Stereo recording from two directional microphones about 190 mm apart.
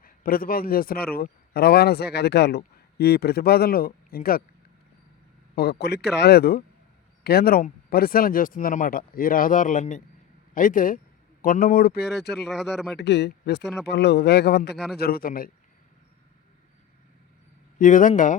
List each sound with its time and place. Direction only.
0.0 s a man's voice: 50° left (ahead or behind)
5.5 s a man's voice: 60° left (ahead or behind)
12.5 s speech: centre (ahead or behind)
13.0 s a man's voice: 65° left (ahead or behind)
17.7 s speech: 45° left (ahead or behind)